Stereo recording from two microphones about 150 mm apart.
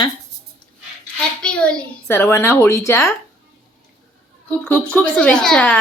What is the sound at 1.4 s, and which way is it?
A child's voice, 5° left (ahead or behind).